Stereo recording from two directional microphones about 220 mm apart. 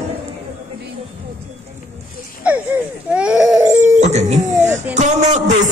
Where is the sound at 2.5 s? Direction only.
5° right (ahead or behind).